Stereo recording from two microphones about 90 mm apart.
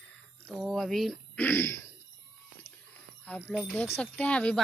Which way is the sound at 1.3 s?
20° left (ahead or behind).